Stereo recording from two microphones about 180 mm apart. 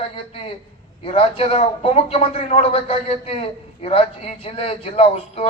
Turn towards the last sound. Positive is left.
turn(degrees=35)  # may be behind; listen again after turning